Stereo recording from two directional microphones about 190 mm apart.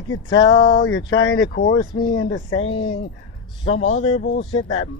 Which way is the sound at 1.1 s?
90° left.